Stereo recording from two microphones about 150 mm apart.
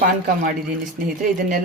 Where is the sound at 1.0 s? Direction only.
70° right (ahead or behind).